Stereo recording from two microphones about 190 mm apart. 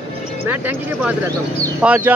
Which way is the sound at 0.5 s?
10° right (ahead or behind).